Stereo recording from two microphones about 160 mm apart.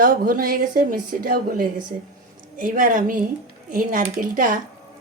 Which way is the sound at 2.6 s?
55° right (ahead or behind).